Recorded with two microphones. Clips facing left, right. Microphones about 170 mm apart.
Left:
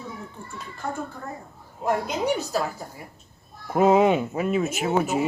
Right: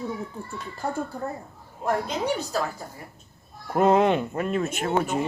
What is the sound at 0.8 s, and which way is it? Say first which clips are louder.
Speech: right 2 dB; 30° right (ahead or behind).